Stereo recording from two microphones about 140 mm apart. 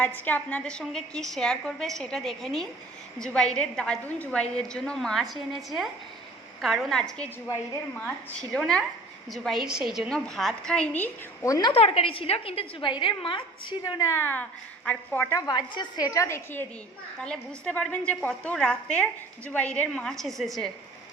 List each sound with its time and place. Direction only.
0.0 s a woman's voice: 15° left (ahead or behind)
8.5 s a woman's voice: 5° left (ahead or behind)
11.4 s a woman's voice: 25° left (ahead or behind)
11.7 s a woman's voice: 40° left (ahead or behind)
14.0 s a woman's voice: 20° left (ahead or behind)
15.4 s a woman's voice: 30° left (ahead or behind); by 20.7 s centre (ahead or behind)